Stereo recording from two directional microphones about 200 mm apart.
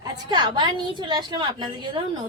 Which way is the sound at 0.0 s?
20° right (ahead or behind).